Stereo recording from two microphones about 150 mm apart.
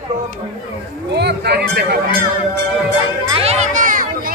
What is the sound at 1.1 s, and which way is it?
Speech, 90° right.